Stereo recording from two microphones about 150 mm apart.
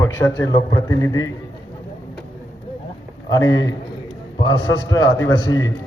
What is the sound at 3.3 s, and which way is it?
A man's voice, 25° left (ahead or behind).